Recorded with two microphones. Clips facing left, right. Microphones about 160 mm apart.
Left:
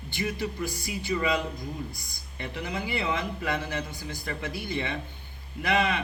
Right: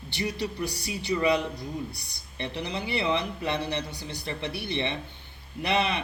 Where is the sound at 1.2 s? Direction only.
25° right (ahead or behind).